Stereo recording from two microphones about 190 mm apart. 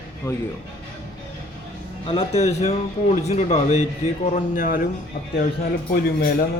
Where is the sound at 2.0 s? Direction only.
35° left (ahead or behind).